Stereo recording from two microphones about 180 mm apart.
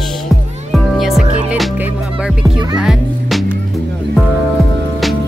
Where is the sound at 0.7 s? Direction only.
Centre (ahead or behind).